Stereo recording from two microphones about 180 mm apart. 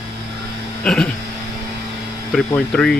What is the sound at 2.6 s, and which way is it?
Speech, 5° left (ahead or behind).